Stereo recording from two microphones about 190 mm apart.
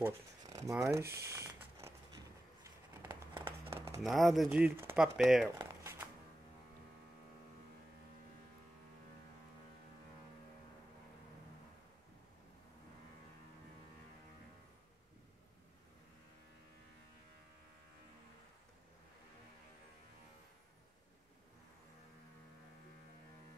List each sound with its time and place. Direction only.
0.0 s speech: 20° right (ahead or behind)
0.9 s a sound: 15° right (ahead or behind)
4.0 s speech: centre (ahead or behind)
5.6 s shuffling cards: 15° right (ahead or behind)